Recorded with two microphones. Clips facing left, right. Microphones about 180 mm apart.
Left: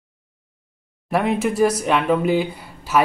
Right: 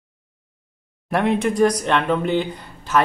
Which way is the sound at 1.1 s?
Centre (ahead or behind).